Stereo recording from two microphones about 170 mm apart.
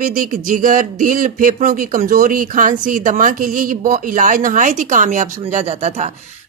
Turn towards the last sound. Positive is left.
turn(degrees=-45)  # may be behind; listen again after turning